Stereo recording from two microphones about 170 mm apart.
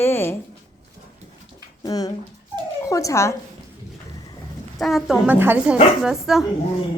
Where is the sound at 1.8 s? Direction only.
20° left (ahead or behind).